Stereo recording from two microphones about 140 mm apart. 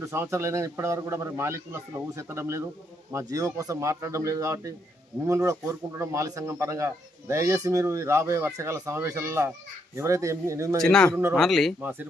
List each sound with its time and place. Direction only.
0.0 s speech: 20° right (ahead or behind)
10.8 s speech: 5° left (ahead or behind)
11.8 s speech: 15° right (ahead or behind)